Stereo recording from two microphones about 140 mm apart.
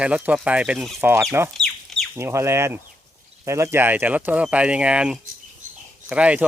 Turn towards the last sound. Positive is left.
turn(degrees=-10)  # may be behind; listen again after turning